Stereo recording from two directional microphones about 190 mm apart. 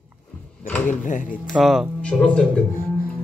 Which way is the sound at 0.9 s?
45° left (ahead or behind).